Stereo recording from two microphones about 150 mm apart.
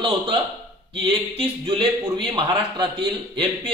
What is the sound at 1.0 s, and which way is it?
Speech, 40° right (ahead or behind).